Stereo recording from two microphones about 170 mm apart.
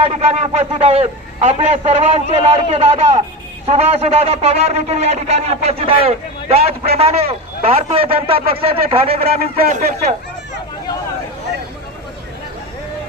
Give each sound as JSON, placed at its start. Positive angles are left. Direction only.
{"t": 0.0, "sound": "speech", "side_deg": -40}
{"t": 9.6, "sound": "speech", "side_deg": -50}